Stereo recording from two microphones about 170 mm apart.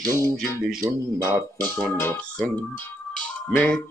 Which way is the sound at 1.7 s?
10° left (ahead or behind).